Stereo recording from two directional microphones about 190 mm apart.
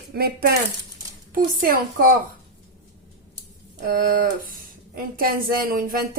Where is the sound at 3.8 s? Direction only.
45° right (ahead or behind).